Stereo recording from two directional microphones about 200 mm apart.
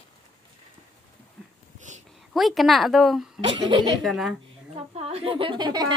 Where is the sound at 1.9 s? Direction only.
40° right (ahead or behind).